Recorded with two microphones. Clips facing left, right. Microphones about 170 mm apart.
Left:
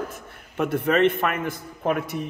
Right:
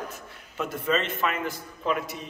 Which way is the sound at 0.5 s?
65° left (ahead or behind).